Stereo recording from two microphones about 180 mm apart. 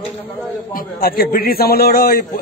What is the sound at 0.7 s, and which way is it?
A man's voice, 55° left (ahead or behind).